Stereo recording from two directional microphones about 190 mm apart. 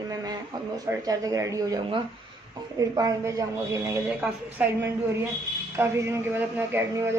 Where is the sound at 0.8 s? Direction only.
20° right (ahead or behind).